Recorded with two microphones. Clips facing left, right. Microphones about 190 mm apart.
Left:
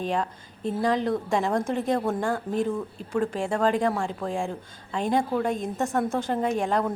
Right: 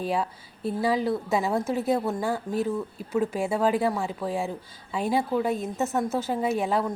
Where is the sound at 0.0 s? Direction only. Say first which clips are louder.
Even; 5° right (ahead or behind).